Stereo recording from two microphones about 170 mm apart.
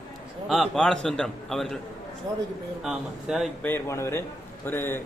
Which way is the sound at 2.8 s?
Centre (ahead or behind).